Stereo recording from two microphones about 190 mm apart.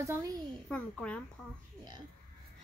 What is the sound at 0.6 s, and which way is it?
Speech, 5° left (ahead or behind).